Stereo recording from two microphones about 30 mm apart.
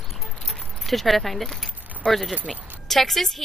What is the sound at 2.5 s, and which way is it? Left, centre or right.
Keys jangling, right.